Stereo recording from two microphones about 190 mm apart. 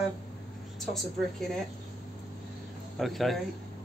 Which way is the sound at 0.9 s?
Centre (ahead or behind).